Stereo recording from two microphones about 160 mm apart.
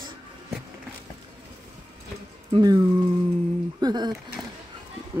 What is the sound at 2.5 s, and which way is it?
Speech, 25° right (ahead or behind).